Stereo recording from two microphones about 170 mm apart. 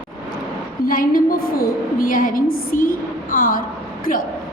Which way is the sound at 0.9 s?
55° left (ahead or behind).